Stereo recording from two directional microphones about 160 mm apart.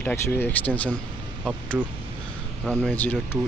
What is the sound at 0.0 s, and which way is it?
Speech, 15° left (ahead or behind).